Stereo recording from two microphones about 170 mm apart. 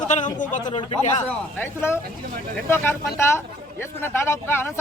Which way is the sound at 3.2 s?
15° left (ahead or behind).